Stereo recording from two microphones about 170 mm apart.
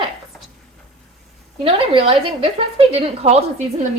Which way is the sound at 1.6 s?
35° right (ahead or behind).